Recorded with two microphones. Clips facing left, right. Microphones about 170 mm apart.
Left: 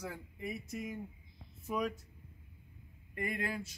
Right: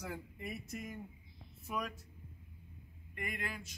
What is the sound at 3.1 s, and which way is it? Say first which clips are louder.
Speech: left 5 dB; 40° left (ahead or behind).